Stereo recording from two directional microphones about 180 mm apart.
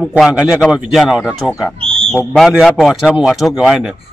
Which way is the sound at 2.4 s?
5° right (ahead or behind).